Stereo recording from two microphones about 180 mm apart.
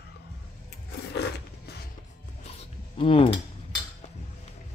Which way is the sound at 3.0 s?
30° left (ahead or behind).